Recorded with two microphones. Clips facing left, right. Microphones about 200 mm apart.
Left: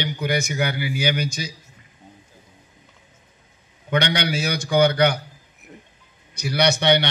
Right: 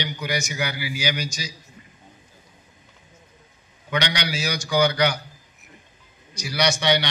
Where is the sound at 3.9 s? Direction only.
55° left (ahead or behind).